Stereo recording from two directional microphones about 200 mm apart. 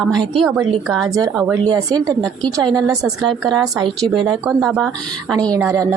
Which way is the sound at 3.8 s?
20° right (ahead or behind).